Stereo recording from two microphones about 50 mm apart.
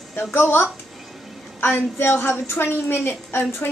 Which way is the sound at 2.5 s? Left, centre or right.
Left.